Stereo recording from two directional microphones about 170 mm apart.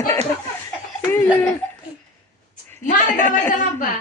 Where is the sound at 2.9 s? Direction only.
50° left (ahead or behind).